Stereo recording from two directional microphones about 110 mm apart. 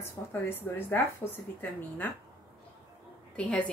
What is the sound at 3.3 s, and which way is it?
Speech, 10° left (ahead or behind).